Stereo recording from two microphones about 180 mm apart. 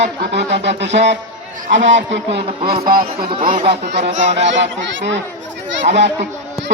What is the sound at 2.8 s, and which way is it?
Speech, 55° right (ahead or behind).